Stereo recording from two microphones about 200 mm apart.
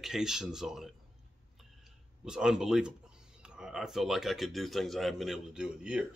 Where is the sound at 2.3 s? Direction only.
5° right (ahead or behind).